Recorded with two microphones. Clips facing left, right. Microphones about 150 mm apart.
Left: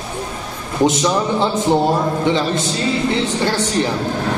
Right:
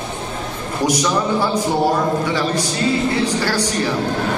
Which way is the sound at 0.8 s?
25° left (ahead or behind).